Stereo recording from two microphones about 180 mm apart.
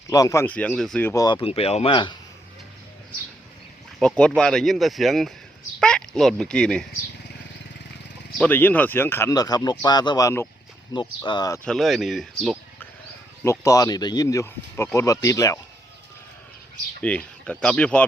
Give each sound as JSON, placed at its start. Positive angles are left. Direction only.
{"t": 0.1, "sound": "speech", "side_deg": 20}
{"t": 4.0, "sound": "speech", "side_deg": 5}
{"t": 8.4, "sound": "speech", "side_deg": 10}
{"t": 10.9, "sound": "speech", "side_deg": 25}
{"t": 11.6, "sound": "speech", "side_deg": 0}
{"t": 13.4, "sound": "speech", "side_deg": 15}
{"t": 17.0, "sound": "speech", "side_deg": 5}